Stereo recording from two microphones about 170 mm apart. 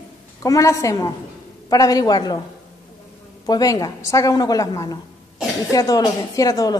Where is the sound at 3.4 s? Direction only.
20° left (ahead or behind).